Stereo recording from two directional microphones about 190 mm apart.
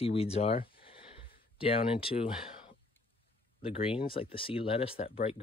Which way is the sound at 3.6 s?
30° left (ahead or behind).